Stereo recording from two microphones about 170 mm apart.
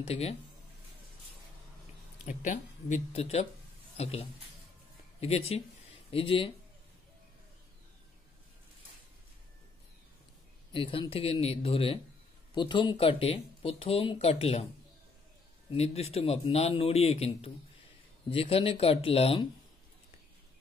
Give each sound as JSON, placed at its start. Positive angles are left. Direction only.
{"t": 0.0, "sound": "speech", "side_deg": 35}
{"t": 2.2, "sound": "speech", "side_deg": 45}
{"t": 10.7, "sound": "speech", "side_deg": 30}
{"t": 15.7, "sound": "speech", "side_deg": 35}